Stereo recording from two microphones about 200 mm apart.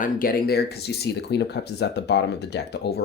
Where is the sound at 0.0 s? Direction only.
45° left (ahead or behind).